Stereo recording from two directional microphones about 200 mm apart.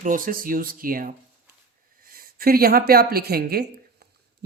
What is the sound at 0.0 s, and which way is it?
Speech, 45° right (ahead or behind).